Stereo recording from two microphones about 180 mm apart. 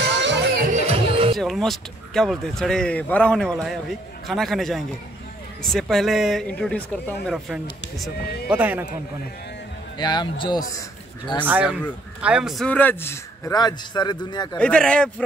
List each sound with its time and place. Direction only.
0.1 s music: 75° right (ahead or behind)
0.7 s music: 35° right (ahead or behind)
1.3 s speech: centre (ahead or behind)
9.9 s a man's voice: 25° left (ahead or behind)
11.4 s speech: 10° right (ahead or behind); by 14.6 s 25° left (ahead or behind)
14.6 s speech: 5° left (ahead or behind)